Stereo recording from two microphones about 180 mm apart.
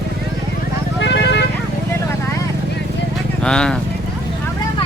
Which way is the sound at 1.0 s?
70° left (ahead or behind).